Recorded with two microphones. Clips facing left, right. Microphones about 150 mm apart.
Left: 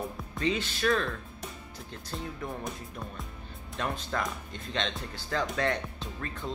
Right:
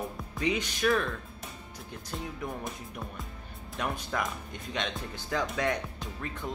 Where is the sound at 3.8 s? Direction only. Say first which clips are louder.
Even; 15° right (ahead or behind).